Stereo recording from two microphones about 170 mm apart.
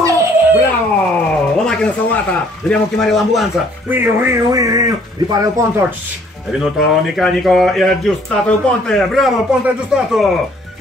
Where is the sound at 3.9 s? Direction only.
10° right (ahead or behind).